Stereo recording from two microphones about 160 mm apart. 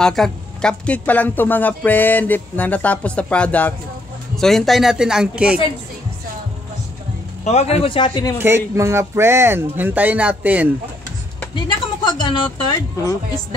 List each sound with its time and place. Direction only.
0.0 s speech: 5° left (ahead or behind)
7.4 s a man's voice: 40° left (ahead or behind)
8.4 s speech: 15° right (ahead or behind)
11.5 s speech: 30° left (ahead or behind)